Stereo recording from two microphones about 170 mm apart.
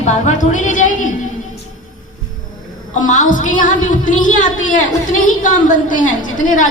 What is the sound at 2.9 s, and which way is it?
A woman's voice, 45° left (ahead or behind).